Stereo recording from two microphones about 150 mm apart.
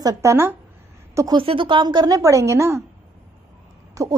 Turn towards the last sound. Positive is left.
turn(degrees=-20)  # may be behind; listen again after turning